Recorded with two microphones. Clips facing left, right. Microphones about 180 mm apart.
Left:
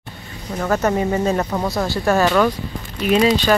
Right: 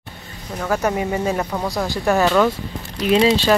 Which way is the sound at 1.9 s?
15° right (ahead or behind).